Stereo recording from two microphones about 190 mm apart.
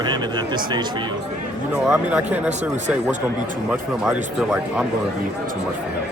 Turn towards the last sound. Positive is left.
turn(degrees=-5)  # may be behind; listen again after turning